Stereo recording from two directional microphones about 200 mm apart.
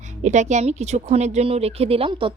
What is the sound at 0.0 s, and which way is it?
Speech, 35° right (ahead or behind).